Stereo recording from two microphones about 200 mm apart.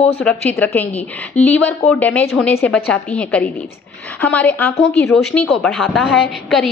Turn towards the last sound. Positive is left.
turn(degrees=0)  # may be behind; listen again after turning